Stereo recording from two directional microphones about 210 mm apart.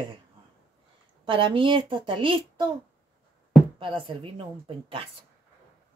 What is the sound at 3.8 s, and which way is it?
Speech, 25° right (ahead or behind).